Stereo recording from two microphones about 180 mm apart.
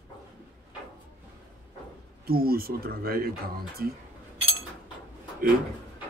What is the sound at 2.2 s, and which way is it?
Speech, 55° right (ahead or behind).